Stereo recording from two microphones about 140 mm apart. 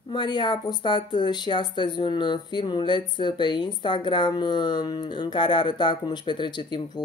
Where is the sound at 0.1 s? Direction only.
35° left (ahead or behind).